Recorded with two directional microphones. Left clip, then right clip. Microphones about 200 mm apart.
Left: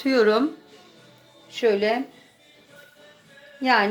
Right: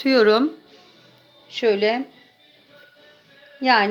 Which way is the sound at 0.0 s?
45° right (ahead or behind).